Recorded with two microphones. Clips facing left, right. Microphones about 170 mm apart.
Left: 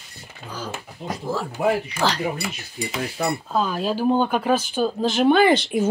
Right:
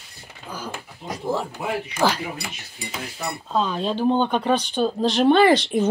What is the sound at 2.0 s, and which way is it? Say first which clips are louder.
Speech: right 3 dB; 15° right (ahead or behind).